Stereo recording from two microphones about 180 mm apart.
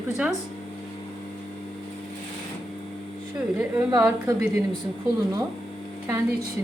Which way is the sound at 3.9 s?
15° right (ahead or behind).